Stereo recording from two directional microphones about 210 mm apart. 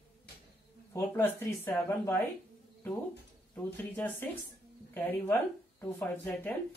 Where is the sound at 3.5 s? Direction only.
10° left (ahead or behind).